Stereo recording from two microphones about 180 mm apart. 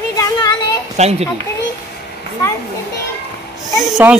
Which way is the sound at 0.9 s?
35° right (ahead or behind).